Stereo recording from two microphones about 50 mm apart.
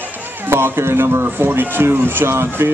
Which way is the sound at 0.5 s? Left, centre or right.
Right.